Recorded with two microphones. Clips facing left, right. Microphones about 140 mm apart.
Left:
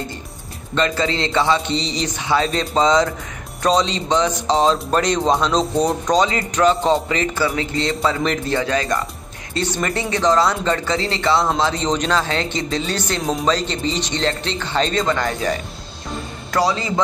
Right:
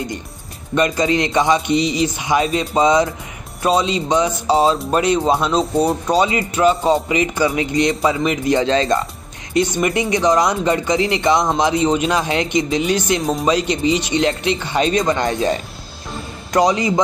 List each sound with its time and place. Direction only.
0.7 s speech: 15° right (ahead or behind)
8.5 s speech: 25° right (ahead or behind)
9.5 s speech: 15° right (ahead or behind)
13.2 s a man's voice: centre (ahead or behind)
13.5 s speech: 10° right (ahead or behind)